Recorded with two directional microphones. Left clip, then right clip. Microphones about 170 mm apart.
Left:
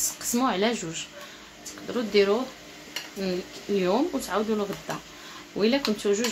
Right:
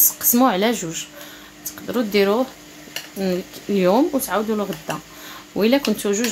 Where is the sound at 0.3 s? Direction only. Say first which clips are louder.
Right 7 dB; 30° right (ahead or behind).